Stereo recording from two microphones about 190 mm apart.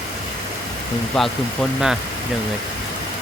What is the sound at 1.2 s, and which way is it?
Speech, centre (ahead or behind).